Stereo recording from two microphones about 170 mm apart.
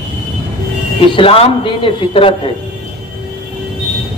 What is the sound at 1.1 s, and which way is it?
Speech, 30° left (ahead or behind).